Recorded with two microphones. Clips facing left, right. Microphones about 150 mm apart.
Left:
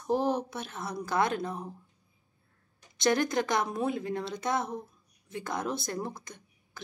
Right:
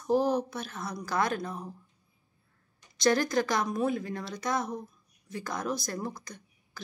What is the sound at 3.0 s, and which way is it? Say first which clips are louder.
A woman's voice: right 1 dB; 20° left (ahead or behind).